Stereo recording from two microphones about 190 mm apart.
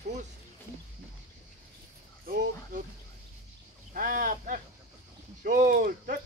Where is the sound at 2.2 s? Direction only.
45° right (ahead or behind).